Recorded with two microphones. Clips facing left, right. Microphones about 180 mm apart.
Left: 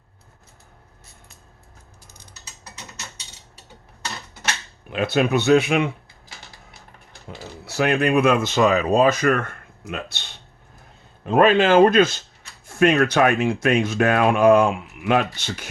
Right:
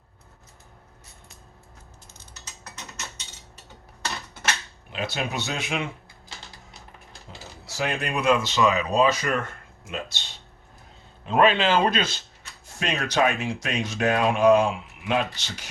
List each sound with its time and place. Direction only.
4.9 s speech: 55° left (ahead or behind)
7.3 s speech: 60° left (ahead or behind)
11.3 s speech: 45° left (ahead or behind)